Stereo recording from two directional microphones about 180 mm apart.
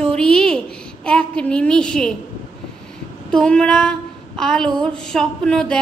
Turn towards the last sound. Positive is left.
turn(degrees=5)  # may be behind; listen again after turning